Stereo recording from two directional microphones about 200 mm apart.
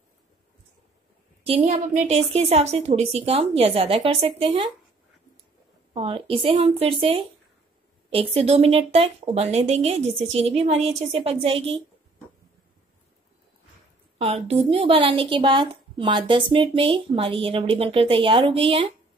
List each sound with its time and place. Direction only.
1.4 s a woman's voice: 30° right (ahead or behind)
5.9 s a woman's voice: 25° right (ahead or behind)
14.1 s a woman's voice: 30° right (ahead or behind)